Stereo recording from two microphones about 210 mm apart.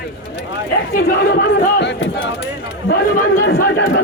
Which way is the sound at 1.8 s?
60° left (ahead or behind).